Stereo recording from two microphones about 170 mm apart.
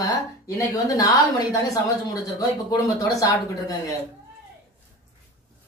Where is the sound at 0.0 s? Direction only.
20° left (ahead or behind).